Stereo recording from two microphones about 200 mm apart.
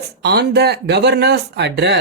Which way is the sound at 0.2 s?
55° right (ahead or behind).